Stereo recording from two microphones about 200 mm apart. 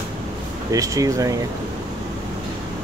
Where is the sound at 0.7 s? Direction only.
15° right (ahead or behind).